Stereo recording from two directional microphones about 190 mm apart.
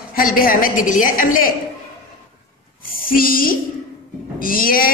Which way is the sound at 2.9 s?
50° left (ahead or behind).